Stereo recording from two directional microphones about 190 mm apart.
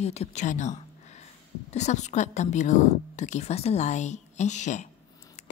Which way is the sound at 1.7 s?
35° left (ahead or behind).